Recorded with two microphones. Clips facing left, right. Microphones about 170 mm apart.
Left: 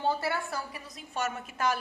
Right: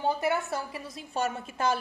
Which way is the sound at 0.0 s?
15° right (ahead or behind).